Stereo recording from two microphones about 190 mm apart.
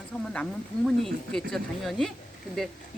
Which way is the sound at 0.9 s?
5° left (ahead or behind).